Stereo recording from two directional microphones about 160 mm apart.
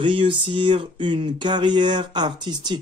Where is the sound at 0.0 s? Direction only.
30° right (ahead or behind).